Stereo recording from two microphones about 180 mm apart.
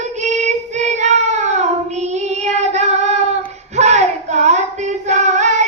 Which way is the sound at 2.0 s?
40° right (ahead or behind).